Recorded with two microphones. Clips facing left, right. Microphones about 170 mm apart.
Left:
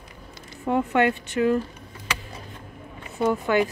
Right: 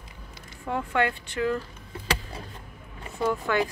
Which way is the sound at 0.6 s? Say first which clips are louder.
Left 5 dB; 20° left (ahead or behind).